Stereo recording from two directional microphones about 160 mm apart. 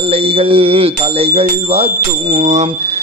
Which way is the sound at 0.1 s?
35° right (ahead or behind).